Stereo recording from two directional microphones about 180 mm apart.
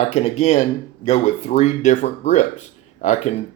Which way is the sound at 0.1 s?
40° left (ahead or behind).